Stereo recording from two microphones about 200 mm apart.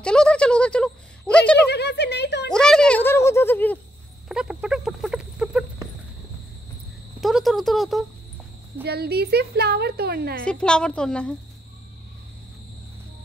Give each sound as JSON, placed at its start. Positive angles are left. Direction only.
{"t": 0.0, "sound": "speech", "side_deg": 5}
{"t": 1.6, "sound": "speech", "side_deg": 55}
{"t": 2.5, "sound": "a sound", "side_deg": 5}
{"t": 4.3, "sound": "a sound", "side_deg": -5}
{"t": 7.2, "sound": "cricket", "side_deg": 0}
{"t": 8.8, "sound": "a woman's voice", "side_deg": -55}
{"t": 10.4, "sound": "a woman's voice", "side_deg": 5}